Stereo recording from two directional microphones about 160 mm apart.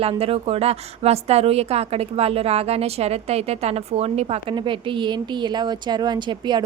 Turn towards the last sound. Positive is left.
turn(degrees=-30)  # may be behind; listen again after turning